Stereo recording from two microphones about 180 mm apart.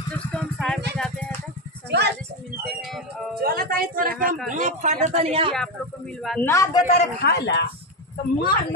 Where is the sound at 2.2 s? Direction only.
Centre (ahead or behind).